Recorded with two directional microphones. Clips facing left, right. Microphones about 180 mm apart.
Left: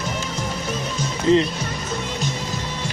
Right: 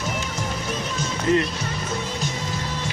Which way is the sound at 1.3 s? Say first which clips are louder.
Left 4 dB; 25° left (ahead or behind).